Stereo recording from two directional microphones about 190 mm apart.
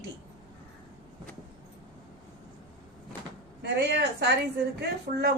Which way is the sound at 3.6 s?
60° right (ahead or behind).